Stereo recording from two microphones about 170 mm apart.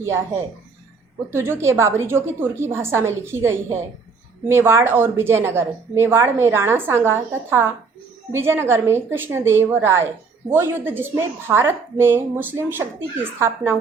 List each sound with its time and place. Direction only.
1.3 s a woman's voice: 15° right (ahead or behind)